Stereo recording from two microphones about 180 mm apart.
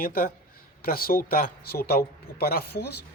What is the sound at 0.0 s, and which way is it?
Speech, 55° left (ahead or behind).